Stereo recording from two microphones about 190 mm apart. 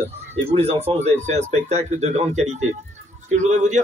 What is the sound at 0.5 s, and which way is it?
Speech, 30° right (ahead or behind).